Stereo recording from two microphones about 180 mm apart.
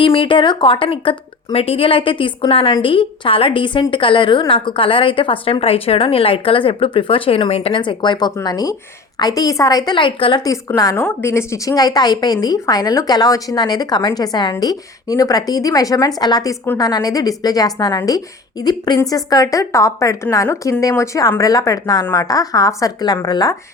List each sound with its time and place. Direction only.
0.0 s a woman's voice: 30° left (ahead or behind)